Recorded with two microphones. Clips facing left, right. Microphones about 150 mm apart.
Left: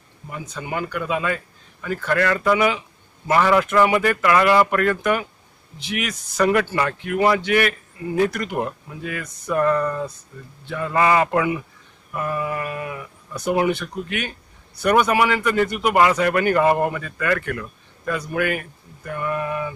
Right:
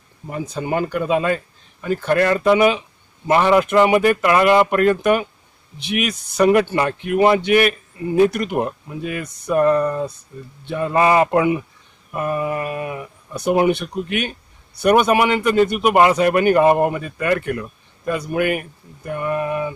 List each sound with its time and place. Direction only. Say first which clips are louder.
0.3 s speech: right 7 dB; 35° right (ahead or behind)